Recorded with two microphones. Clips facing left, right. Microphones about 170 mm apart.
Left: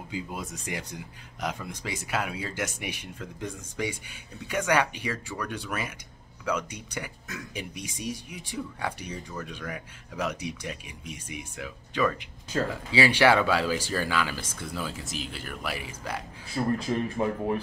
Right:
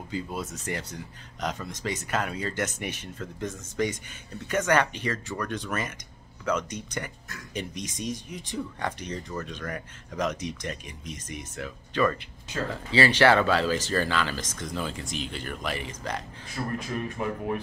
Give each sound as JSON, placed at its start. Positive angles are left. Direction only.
{"t": 0.1, "sound": "speech", "side_deg": 10}
{"t": 16.6, "sound": "a man's voice", "side_deg": 20}